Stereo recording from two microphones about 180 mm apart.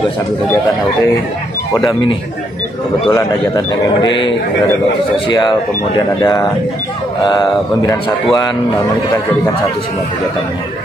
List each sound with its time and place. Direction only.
3.1 s a man's voice: 20° left (ahead or behind)
5.9 s a man's voice: 20° left (ahead or behind)